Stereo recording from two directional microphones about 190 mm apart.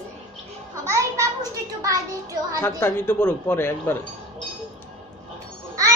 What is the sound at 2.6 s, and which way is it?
A woman's voice, 15° left (ahead or behind).